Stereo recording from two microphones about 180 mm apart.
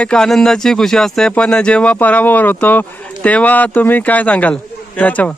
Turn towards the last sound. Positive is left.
turn(degrees=5)  # may be behind; listen again after turning